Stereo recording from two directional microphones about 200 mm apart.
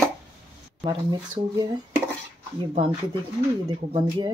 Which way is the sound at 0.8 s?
25° right (ahead or behind).